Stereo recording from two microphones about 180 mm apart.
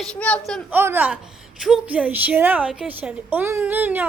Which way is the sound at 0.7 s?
10° right (ahead or behind).